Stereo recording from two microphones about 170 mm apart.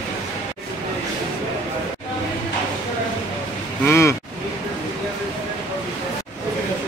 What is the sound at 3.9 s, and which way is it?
Speech, 15° left (ahead or behind).